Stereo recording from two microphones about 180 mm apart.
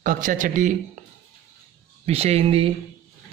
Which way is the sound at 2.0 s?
35° right (ahead or behind).